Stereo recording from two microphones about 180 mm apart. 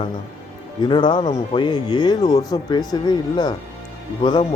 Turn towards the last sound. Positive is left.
turn(degrees=25)  # may be behind; listen again after turning